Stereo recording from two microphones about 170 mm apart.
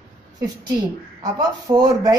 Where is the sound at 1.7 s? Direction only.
25° right (ahead or behind).